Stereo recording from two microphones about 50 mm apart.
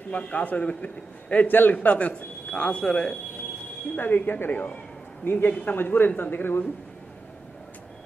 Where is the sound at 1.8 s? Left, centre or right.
Left.